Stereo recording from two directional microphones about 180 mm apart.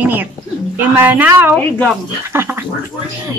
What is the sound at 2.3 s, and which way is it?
Speech, 15° right (ahead or behind).